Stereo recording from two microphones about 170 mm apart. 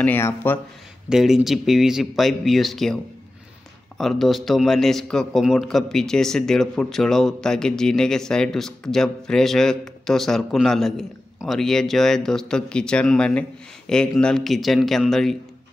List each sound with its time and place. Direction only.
0.0 s speech: 10° left (ahead or behind)
1.0 s a man's voice: 5° right (ahead or behind)
4.0 s a man's voice: centre (ahead or behind)